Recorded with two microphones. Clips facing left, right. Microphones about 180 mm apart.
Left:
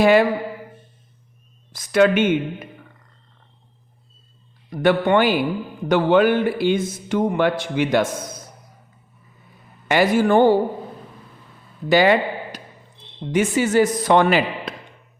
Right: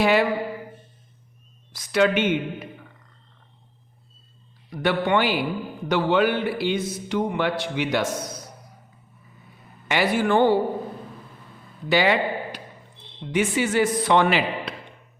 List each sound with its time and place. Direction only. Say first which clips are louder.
0.0 s a man's voice: left 5 dB; 45° left (ahead or behind)
1.7 s a man's voice: left 4 dB; 50° left (ahead or behind)
4.7 s a man's voice: left 5 dB; 50° left (ahead or behind)
9.9 s a man's voice: left 5 dB; 45° left (ahead or behind)
11.9 s a man's voice: left 5 dB; 45° left (ahead or behind)